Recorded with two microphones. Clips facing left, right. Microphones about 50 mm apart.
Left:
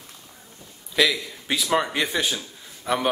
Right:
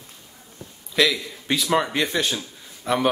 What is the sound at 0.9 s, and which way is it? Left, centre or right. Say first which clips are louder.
Speech: right 1 dB; centre.